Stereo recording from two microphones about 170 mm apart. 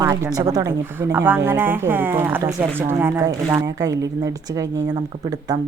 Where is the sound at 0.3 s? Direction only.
20° right (ahead or behind).